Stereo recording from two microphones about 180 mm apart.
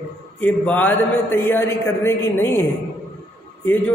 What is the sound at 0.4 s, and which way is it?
A man's voice, 10° left (ahead or behind).